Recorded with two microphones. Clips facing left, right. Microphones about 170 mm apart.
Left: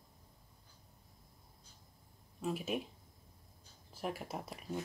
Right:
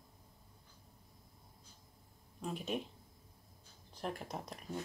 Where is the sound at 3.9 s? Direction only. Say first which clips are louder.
Left 1 dB; 5° left (ahead or behind).